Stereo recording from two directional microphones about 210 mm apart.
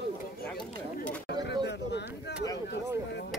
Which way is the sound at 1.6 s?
55° left (ahead or behind).